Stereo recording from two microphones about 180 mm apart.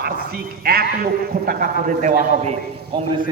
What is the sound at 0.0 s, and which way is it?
A man's voice, 60° right (ahead or behind).